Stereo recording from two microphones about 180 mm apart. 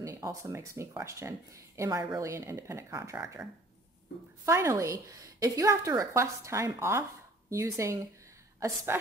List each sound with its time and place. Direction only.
0.0 s a woman's voice: 20° right (ahead or behind)
4.5 s a woman's voice: 15° right (ahead or behind)